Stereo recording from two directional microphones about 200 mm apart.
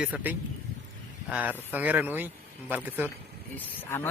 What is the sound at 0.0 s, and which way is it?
A man's voice, 5° right (ahead or behind).